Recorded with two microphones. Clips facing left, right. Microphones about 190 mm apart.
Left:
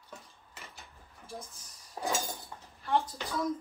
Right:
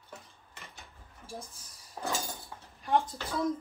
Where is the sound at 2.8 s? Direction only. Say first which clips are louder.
Right 2 dB; 15° right (ahead or behind).